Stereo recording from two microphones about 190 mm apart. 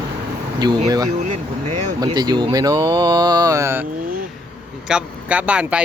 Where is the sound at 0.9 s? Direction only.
20° right (ahead or behind).